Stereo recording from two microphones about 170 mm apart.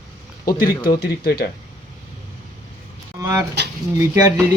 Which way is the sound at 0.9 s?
65° left (ahead or behind).